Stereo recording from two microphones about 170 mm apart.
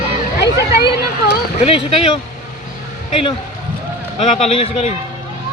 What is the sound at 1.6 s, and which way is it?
Speech, 35° left (ahead or behind).